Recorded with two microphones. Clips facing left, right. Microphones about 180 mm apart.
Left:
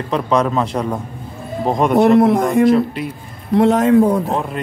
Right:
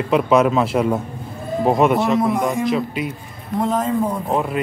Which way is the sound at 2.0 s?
65° left (ahead or behind).